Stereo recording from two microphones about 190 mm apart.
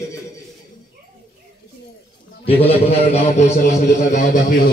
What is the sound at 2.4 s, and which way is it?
A man's voice, 30° left (ahead or behind).